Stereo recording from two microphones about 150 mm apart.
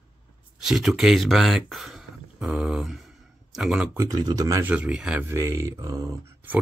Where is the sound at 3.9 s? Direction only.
20° right (ahead or behind).